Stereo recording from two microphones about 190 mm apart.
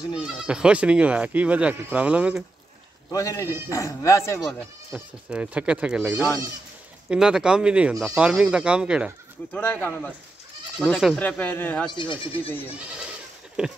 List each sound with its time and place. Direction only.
0.1 s speech: 5° right (ahead or behind)
3.1 s speech: 20° left (ahead or behind)
4.5 s speech: 5° right (ahead or behind)
9.5 s speech: 10° left (ahead or behind)
10.8 s speech: centre (ahead or behind)
11.9 s speech: 25° left (ahead or behind)
12.7 s speech: 5° right (ahead or behind)